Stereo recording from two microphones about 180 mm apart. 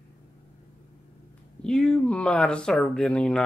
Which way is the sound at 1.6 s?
5° left (ahead or behind).